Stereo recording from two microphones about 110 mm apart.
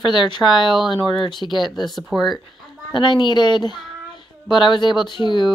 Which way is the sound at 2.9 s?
45° left (ahead or behind).